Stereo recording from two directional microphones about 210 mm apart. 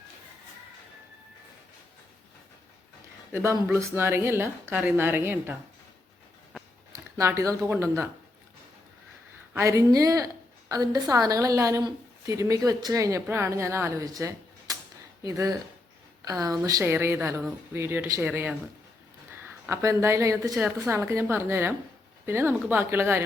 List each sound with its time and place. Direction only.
3.3 s a woman's voice: 10° right (ahead or behind)
6.9 s speech: 15° right (ahead or behind)
9.5 s a woman's voice: 15° right (ahead or behind)
16.6 s a woman's voice: 15° right (ahead or behind)